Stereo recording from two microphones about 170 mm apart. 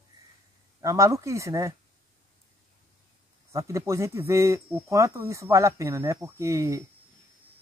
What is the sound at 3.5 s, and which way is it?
Speech, 15° right (ahead or behind).